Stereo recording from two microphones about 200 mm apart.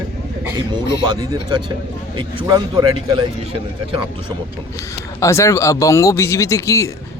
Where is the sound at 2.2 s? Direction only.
20° right (ahead or behind).